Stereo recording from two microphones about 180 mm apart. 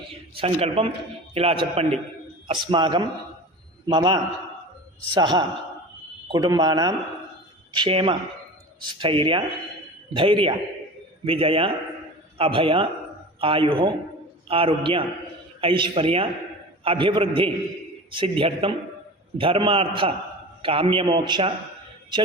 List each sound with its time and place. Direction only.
0.1 s a man's voice: 30° right (ahead or behind)